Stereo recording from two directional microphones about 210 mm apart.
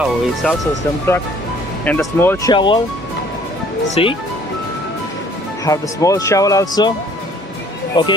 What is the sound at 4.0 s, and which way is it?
Speech, 25° left (ahead or behind).